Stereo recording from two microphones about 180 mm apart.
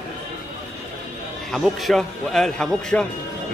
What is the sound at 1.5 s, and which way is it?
Speech, centre (ahead or behind).